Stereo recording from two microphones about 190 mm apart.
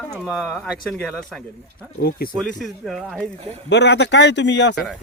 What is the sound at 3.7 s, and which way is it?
A man's voice, 65° left (ahead or behind).